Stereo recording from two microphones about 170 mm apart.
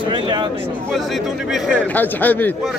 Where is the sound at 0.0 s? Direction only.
30° right (ahead or behind).